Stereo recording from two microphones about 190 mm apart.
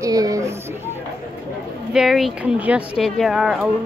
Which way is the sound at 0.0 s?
20° right (ahead or behind).